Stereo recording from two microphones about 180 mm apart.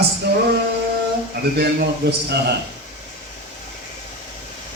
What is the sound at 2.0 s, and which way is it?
Speech, 60° right (ahead or behind).